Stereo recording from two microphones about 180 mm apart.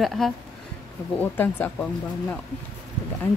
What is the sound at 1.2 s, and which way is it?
Speech, 10° left (ahead or behind).